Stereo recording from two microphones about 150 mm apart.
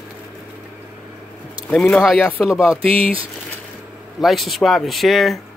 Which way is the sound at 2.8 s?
40° right (ahead or behind).